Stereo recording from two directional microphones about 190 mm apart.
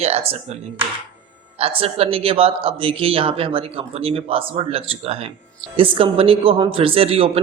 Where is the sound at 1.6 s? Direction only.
30° right (ahead or behind).